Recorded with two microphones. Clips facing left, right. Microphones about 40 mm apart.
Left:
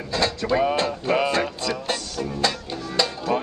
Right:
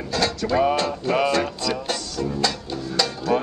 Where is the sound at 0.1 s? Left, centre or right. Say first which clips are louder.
Right 1 dB; centre.